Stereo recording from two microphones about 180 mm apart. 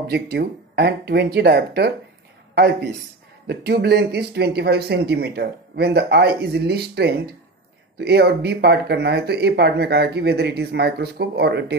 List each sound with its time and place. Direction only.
0.0 s speech: 60° right (ahead or behind)